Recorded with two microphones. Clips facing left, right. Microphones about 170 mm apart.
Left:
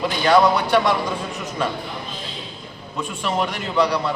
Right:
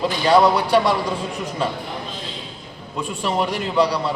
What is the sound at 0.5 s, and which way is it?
Speech, 35° right (ahead or behind).